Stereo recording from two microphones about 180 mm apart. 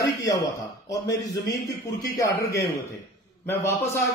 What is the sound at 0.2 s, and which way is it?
A man's voice, 20° left (ahead or behind).